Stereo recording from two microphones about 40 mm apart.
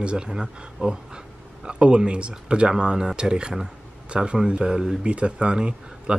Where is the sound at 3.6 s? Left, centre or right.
Right.